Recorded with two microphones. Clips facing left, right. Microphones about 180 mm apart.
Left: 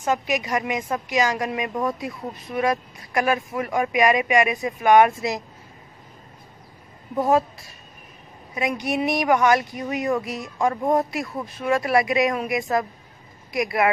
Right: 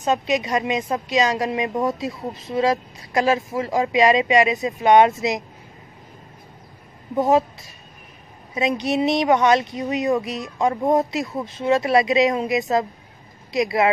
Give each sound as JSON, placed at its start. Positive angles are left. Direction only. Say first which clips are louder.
{"t": 0.0, "sound": "a woman's voice", "louder": "right 3 dB", "side_deg": -20}
{"t": 7.2, "sound": "a woman's voice", "louder": "right 2 dB", "side_deg": -20}
{"t": 8.5, "sound": "a woman's voice", "louder": "right 3 dB", "side_deg": -25}